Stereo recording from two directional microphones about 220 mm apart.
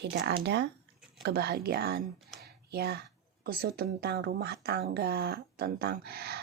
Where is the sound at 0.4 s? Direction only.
50° right (ahead or behind).